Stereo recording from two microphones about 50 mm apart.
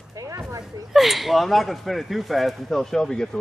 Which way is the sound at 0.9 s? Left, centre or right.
Centre.